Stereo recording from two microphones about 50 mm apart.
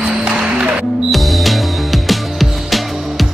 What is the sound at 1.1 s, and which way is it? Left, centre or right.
Music, centre.